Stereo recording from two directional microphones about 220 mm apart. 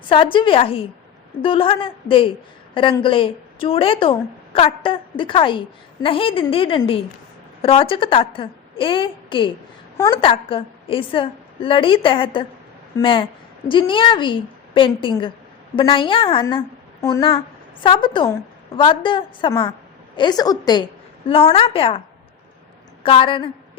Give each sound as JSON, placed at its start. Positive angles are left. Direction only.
{"t": 0.1, "sound": "a woman's voice", "side_deg": 25}
{"t": 23.0, "sound": "a woman's voice", "side_deg": 25}